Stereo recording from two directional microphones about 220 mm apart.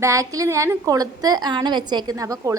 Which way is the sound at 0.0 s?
15° right (ahead or behind).